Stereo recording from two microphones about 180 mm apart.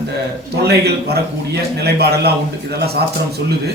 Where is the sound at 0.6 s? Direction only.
65° right (ahead or behind).